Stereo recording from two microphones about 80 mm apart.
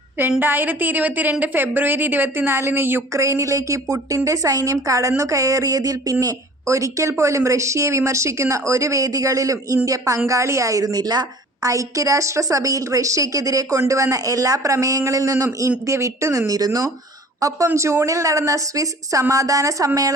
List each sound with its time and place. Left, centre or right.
0.2 s a woman's voice: right
16.5 s a woman's voice: right
17.7 s a woman's voice: right